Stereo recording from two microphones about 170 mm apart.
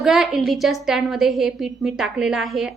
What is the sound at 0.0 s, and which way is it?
A woman's voice, centre (ahead or behind).